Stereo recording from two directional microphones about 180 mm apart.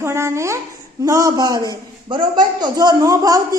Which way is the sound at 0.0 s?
15° right (ahead or behind).